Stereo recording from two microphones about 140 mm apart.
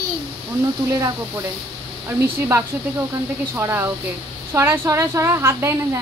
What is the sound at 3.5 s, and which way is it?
A child's voice, 15° right (ahead or behind).